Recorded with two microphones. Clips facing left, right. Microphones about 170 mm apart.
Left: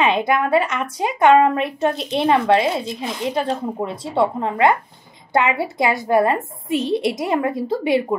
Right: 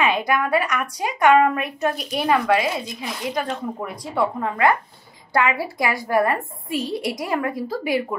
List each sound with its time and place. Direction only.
0.0 s a woman's voice: 25° left (ahead or behind)